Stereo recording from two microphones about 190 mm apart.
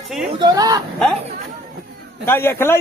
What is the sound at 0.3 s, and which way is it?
Speech, 20° right (ahead or behind).